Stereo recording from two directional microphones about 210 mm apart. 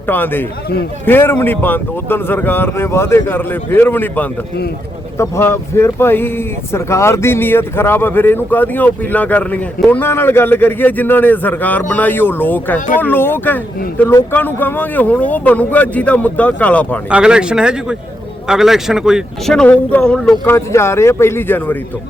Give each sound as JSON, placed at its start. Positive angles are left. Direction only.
{"t": 0.1, "sound": "speech", "side_deg": 10}
{"t": 17.1, "sound": "speech", "side_deg": -5}